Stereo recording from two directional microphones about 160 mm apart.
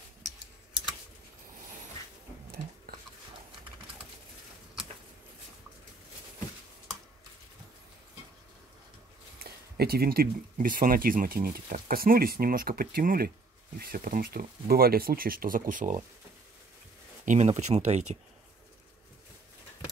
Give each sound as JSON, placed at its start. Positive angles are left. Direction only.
{"t": 9.4, "sound": "speech", "side_deg": -75}
{"t": 17.2, "sound": "speech", "side_deg": -50}